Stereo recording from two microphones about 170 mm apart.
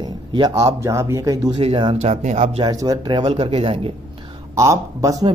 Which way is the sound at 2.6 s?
20° right (ahead or behind).